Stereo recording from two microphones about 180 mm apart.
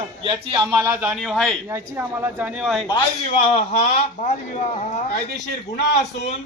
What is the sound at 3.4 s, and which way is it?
Speech, 35° left (ahead or behind).